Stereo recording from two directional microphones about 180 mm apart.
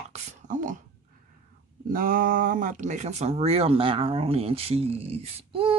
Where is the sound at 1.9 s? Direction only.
50° right (ahead or behind).